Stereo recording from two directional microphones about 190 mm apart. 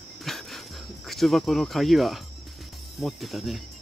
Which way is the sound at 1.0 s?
Centre (ahead or behind).